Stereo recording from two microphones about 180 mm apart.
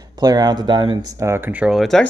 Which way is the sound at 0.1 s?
20° right (ahead or behind).